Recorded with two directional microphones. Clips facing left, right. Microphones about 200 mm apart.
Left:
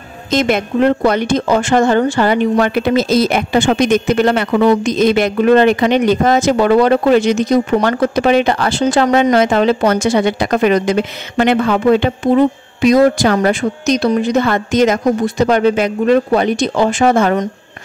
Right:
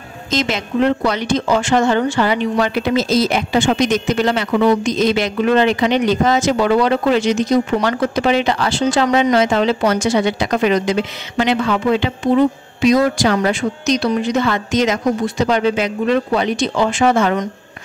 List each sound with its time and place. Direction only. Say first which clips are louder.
0.3 s a woman's voice: left 5 dB; 55° left (ahead or behind)